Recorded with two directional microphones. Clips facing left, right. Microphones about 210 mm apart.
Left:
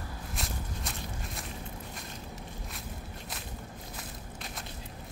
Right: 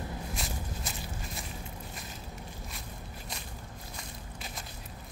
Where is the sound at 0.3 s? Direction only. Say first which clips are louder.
Right 1 dB; centre (ahead or behind).